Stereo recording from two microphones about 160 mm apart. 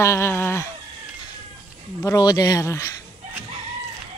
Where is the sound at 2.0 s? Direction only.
20° left (ahead or behind).